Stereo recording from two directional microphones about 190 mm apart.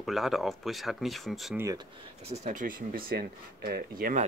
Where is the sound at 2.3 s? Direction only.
40° right (ahead or behind).